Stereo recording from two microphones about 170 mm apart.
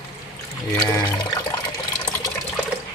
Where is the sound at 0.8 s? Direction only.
20° left (ahead or behind).